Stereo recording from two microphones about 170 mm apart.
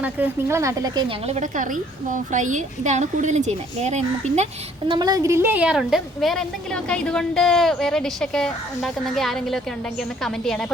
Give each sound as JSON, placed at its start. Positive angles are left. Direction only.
{"t": 0.0, "sound": "speech", "side_deg": -15}
{"t": 1.3, "sound": "a woman's voice", "side_deg": -50}
{"t": 4.9, "sound": "a woman's voice", "side_deg": -25}